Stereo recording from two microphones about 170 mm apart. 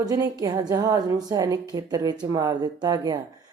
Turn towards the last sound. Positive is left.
turn(degrees=-25)  # may be behind; listen again after turning